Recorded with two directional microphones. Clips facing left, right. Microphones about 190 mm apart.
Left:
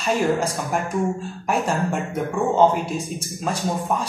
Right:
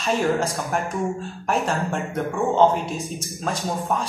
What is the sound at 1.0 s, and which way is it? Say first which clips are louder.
Speech: left 2 dB; centre (ahead or behind).